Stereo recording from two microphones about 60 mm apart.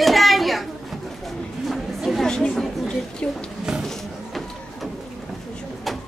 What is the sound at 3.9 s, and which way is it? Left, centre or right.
Printer, centre.